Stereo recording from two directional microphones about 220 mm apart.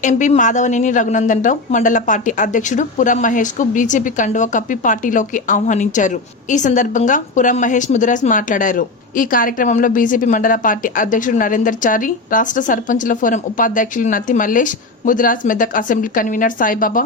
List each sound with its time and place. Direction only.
0.0 s a woman's voice: 35° left (ahead or behind)